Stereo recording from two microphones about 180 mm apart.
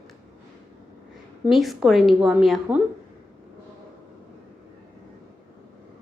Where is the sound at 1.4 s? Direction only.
Centre (ahead or behind).